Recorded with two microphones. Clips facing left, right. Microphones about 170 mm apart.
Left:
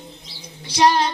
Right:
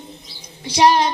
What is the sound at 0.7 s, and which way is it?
Music, 20° right (ahead or behind).